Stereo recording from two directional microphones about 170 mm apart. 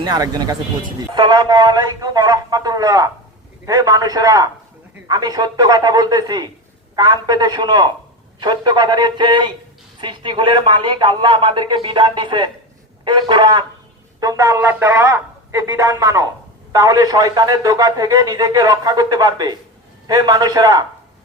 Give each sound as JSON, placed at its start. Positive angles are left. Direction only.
{"t": 0.0, "sound": "a man's voice", "side_deg": -25}